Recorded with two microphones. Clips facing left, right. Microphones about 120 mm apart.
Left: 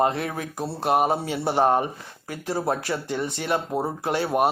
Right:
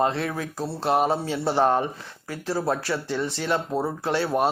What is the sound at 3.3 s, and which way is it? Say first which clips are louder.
Speech: right 1 dB; 55° left (ahead or behind).